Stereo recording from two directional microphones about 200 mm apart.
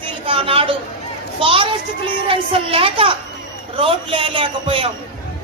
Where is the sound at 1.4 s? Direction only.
25° right (ahead or behind).